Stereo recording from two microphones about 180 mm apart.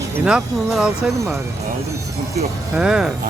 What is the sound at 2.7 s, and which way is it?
Speech, 5° right (ahead or behind).